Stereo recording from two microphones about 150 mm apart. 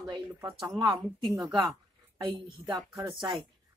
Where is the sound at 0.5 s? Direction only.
30° right (ahead or behind).